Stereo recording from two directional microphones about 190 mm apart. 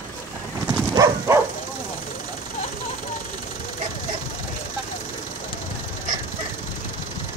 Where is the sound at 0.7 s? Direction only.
15° right (ahead or behind).